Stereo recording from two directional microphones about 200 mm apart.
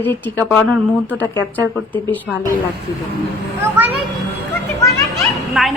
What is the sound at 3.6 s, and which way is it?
Speech, 10° right (ahead or behind).